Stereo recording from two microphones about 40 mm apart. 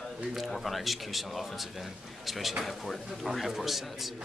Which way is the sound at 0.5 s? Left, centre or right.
Centre.